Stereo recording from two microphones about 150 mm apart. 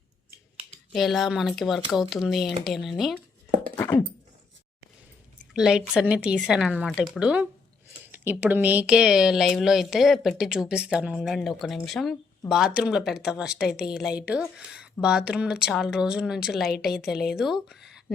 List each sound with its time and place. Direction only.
0.9 s speech: centre (ahead or behind)
3.8 s beatboxing: 20° left (ahead or behind)
5.5 s speech: 5° right (ahead or behind)